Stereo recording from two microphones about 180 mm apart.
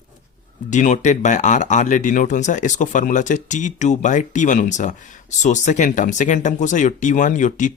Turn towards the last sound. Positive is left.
turn(degrees=45)  # may be behind; listen again after turning